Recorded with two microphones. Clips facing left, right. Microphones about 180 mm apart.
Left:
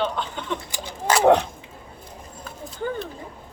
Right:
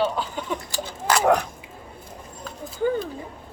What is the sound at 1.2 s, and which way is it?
Speech, 25° left (ahead or behind).